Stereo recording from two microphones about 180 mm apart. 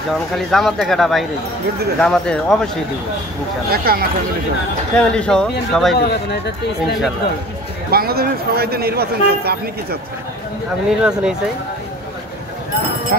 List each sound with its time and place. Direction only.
0.1 s speech: centre (ahead or behind)
3.7 s a man's voice: 60° right (ahead or behind)
4.9 s speech: 5° left (ahead or behind)
5.9 s speech: 65° left (ahead or behind)
7.9 s a man's voice: 60° right (ahead or behind)
10.9 s speech: 5° right (ahead or behind)